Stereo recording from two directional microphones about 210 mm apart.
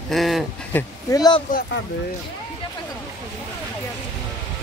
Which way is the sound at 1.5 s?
40° left (ahead or behind).